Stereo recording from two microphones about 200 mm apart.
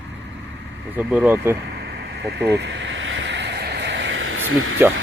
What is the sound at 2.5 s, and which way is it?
Vehicle, 65° right (ahead or behind).